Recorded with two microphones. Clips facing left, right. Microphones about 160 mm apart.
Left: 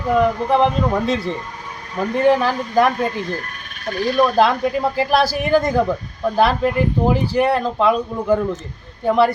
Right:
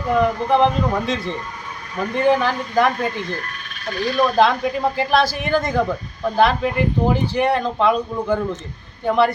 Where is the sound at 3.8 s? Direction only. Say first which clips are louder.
Left 2 dB; 50° left (ahead or behind).